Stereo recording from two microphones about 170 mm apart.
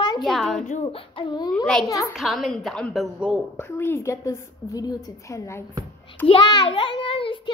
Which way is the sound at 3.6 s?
15° left (ahead or behind).